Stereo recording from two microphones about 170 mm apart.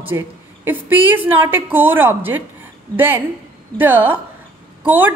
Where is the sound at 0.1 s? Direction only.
20° right (ahead or behind).